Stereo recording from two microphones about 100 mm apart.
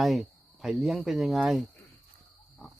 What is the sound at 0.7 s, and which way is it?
Speech, 5° right (ahead or behind).